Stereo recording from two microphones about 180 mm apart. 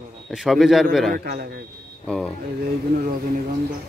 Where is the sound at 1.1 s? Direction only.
55° right (ahead or behind).